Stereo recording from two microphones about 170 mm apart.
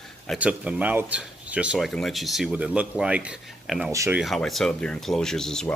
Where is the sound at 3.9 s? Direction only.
20° right (ahead or behind).